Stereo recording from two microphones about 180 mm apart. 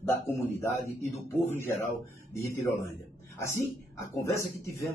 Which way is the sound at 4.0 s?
15° left (ahead or behind).